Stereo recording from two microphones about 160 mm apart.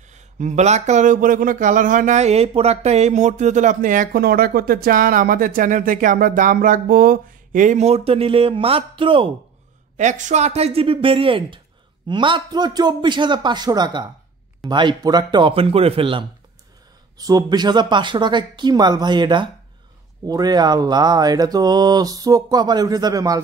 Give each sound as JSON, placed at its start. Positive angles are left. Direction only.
{"t": 0.0, "sound": "speech", "side_deg": -45}
{"t": 9.9, "sound": "speech", "side_deg": -50}